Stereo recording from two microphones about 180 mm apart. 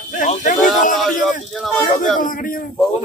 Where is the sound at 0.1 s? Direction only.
45° left (ahead or behind).